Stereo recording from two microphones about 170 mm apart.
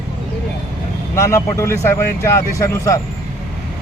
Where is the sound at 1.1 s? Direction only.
15° left (ahead or behind).